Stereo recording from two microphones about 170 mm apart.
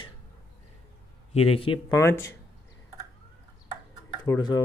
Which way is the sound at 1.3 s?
35° left (ahead or behind).